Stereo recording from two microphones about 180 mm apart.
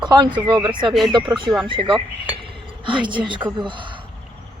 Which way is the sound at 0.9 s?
Centre (ahead or behind).